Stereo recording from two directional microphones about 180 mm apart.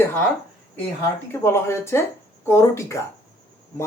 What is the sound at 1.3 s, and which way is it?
Speech, 15° left (ahead or behind).